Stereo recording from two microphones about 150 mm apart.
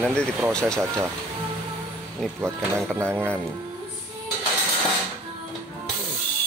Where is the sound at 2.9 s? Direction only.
15° right (ahead or behind).